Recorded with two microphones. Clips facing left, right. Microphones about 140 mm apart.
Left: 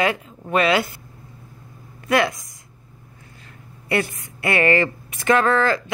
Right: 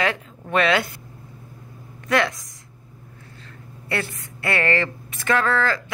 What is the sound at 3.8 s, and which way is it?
Speech, 15° left (ahead or behind).